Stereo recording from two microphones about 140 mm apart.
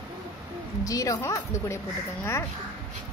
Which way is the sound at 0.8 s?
25° left (ahead or behind).